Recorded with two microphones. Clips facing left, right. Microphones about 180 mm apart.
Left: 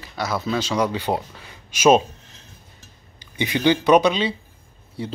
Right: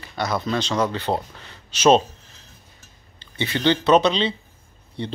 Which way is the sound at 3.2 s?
15° left (ahead or behind).